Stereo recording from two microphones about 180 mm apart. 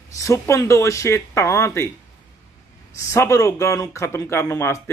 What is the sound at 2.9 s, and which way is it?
Speech, 15° left (ahead or behind).